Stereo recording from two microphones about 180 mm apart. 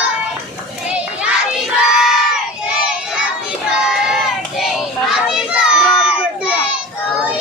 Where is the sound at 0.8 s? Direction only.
5° right (ahead or behind).